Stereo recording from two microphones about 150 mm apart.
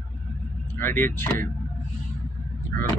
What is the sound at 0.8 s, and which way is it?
Speech, 15° left (ahead or behind).